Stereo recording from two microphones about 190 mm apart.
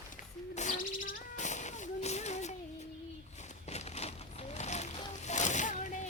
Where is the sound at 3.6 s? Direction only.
35° left (ahead or behind).